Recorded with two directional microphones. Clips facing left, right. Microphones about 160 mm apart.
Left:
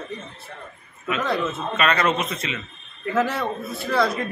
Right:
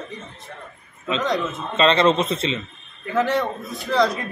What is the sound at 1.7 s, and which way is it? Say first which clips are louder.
Speech: right 5 dB; 25° right (ahead or behind).